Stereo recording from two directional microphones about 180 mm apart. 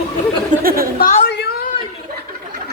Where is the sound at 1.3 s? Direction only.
70° left (ahead or behind).